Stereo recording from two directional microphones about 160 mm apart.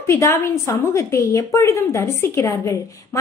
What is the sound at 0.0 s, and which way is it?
A woman's voice, 15° left (ahead or behind).